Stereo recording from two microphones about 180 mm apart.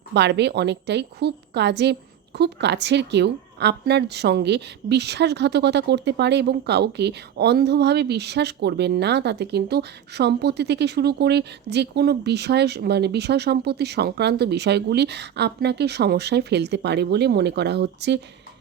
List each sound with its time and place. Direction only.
0.1 s a woman's voice: 70° right (ahead or behind)